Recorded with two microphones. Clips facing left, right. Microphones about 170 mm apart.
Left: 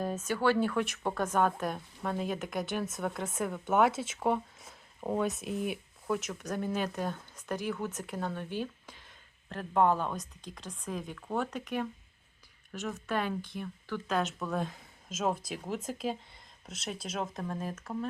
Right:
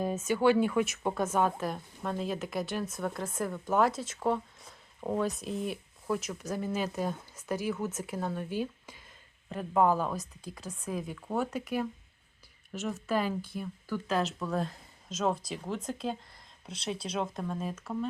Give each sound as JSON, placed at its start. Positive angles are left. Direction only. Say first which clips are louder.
{"t": 0.0, "sound": "speech", "louder": "right 3 dB", "side_deg": -10}
{"t": 8.5, "sound": "a sound", "louder": "right 2 dB", "side_deg": -10}
{"t": 9.5, "sound": "speech", "louder": "right 1 dB", "side_deg": -5}